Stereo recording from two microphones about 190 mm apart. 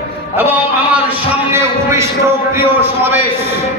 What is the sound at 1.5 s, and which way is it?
A man's voice, 15° right (ahead or behind).